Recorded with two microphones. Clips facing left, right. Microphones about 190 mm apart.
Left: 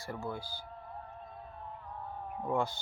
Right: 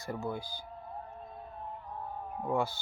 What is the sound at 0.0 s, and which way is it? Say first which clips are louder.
Speech: right 3 dB; 20° right (ahead or behind).